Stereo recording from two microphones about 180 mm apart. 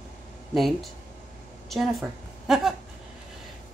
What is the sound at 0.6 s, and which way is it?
A woman's voice, centre (ahead or behind).